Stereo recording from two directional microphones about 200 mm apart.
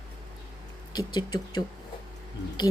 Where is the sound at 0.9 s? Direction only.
20° left (ahead or behind).